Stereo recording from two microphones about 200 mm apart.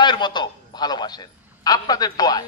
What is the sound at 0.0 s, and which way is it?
A man's voice, 20° left (ahead or behind).